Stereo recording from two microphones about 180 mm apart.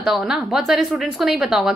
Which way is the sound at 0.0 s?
5° right (ahead or behind).